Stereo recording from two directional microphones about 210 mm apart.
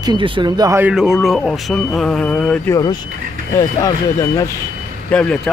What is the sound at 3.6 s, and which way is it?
Speech, 15° left (ahead or behind).